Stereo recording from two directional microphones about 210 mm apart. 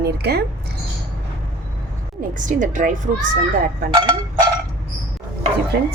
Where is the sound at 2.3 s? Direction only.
40° right (ahead or behind).